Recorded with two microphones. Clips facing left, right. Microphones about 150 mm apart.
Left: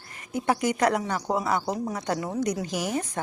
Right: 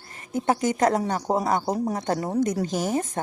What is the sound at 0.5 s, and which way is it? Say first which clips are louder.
Speech: right 2 dB; 45° right (ahead or behind).